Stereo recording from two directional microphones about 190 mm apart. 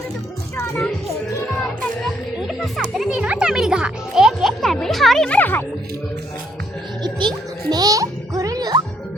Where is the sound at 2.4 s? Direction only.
Centre (ahead or behind).